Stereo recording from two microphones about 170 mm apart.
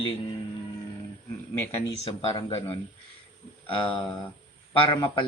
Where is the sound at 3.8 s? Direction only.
30° left (ahead or behind).